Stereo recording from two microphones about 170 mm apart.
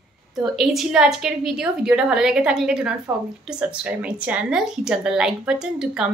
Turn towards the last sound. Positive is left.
turn(degrees=-5)  # may be behind; listen again after turning